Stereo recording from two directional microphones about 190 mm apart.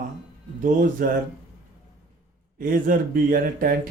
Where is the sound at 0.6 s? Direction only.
45° right (ahead or behind).